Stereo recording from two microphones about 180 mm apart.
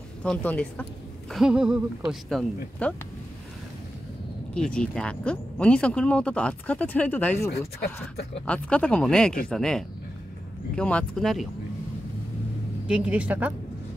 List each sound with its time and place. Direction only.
0.2 s speech: 10° left (ahead or behind)
1.3 s speech: 5° right (ahead or behind)
4.6 s speech: 5° left (ahead or behind)
7.8 s speech: 65° left (ahead or behind)
8.5 s speech: 5° left (ahead or behind)
12.8 s speech: 5° right (ahead or behind)